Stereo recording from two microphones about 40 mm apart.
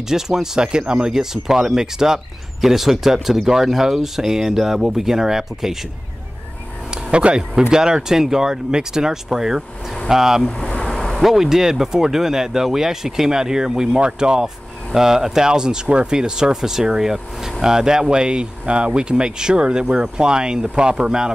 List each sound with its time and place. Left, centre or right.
0.1 s speech: centre
7.1 s speech: right; by 10.4 s centre
10.4 s speech: left
10.9 s a sound: centre
11.2 s speech: centre